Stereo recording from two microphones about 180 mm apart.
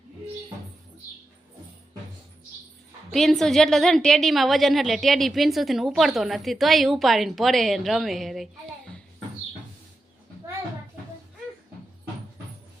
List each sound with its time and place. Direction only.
3.1 s a woman's voice: centre (ahead or behind)